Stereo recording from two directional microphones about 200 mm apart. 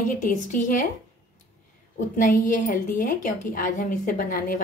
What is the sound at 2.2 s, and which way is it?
A woman's voice, 40° left (ahead or behind).